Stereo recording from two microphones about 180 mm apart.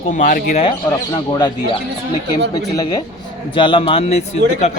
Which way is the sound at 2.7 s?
20° left (ahead or behind).